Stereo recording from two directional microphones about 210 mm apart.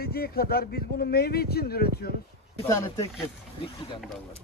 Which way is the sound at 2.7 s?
15° left (ahead or behind).